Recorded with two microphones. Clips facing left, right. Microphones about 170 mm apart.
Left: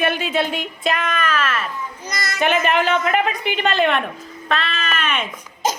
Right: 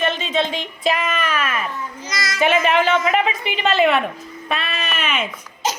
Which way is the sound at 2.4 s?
Centre (ahead or behind).